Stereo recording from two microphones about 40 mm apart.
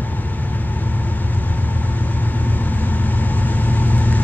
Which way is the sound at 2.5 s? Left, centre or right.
Left.